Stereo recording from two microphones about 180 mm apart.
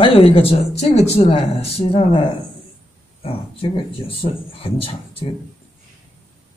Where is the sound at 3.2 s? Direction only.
30° left (ahead or behind).